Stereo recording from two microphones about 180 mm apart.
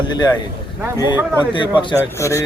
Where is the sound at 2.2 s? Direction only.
15° left (ahead or behind).